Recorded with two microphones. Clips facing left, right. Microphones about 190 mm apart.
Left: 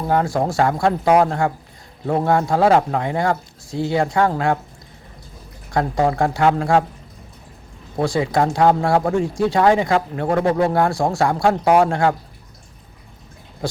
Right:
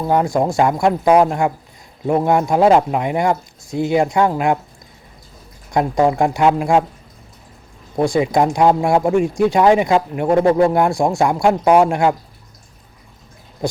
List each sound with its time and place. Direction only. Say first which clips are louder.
0.1 s speech: right 2 dB; 20° right (ahead or behind)
5.7 s speech: right 3 dB; 20° right (ahead or behind)
8.0 s speech: right 3 dB; 15° right (ahead or behind)